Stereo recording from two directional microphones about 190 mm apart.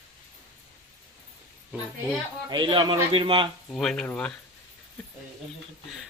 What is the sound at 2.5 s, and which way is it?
Speech, 25° right (ahead or behind).